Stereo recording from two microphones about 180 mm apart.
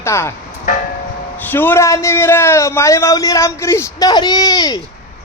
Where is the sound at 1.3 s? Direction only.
10° left (ahead or behind).